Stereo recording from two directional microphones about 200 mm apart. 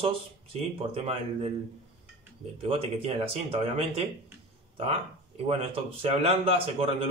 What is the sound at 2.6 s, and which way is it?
A man's voice, 25° right (ahead or behind).